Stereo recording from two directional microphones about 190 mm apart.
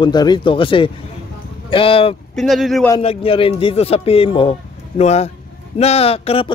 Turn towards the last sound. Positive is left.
turn(degrees=30)  # may be behind; listen again after turning